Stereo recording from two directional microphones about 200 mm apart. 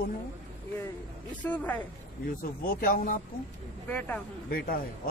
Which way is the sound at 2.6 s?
45° left (ahead or behind).